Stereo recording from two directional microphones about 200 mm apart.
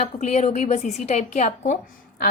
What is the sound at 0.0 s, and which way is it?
A woman's voice, 35° left (ahead or behind).